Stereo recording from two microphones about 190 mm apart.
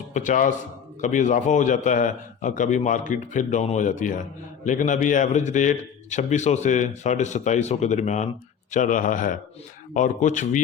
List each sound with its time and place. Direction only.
0.1 s a man's voice: 40° left (ahead or behind)